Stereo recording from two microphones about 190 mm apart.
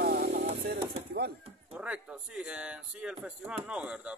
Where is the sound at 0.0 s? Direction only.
55° right (ahead or behind).